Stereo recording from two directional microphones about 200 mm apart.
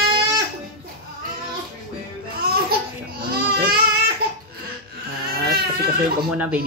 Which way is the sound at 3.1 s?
50° right (ahead or behind).